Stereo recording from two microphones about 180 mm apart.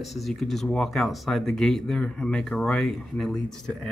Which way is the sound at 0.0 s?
Centre (ahead or behind).